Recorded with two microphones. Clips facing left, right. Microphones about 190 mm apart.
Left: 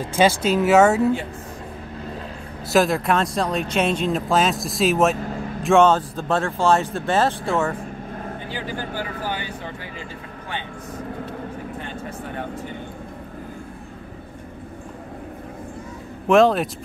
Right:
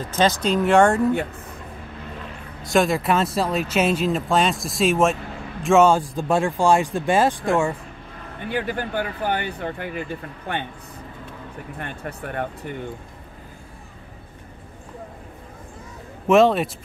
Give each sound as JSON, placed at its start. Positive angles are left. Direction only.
{"t": 0.0, "sound": "speech", "side_deg": 10}
{"t": 2.6, "sound": "a man's voice", "side_deg": 0}
{"t": 8.5, "sound": "speech", "side_deg": -60}
{"t": 11.8, "sound": "speech", "side_deg": -60}
{"t": 16.3, "sound": "speech", "side_deg": 0}